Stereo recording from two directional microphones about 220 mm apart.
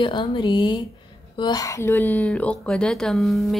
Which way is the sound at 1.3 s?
20° left (ahead or behind).